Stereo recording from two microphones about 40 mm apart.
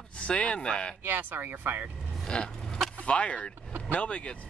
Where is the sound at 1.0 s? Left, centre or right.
Right.